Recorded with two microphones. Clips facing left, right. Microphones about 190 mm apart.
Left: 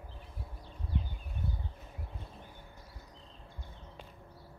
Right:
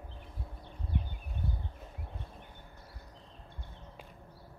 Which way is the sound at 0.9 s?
60° right (ahead or behind).